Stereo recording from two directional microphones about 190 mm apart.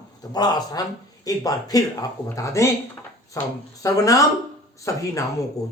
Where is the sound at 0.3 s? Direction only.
20° left (ahead or behind).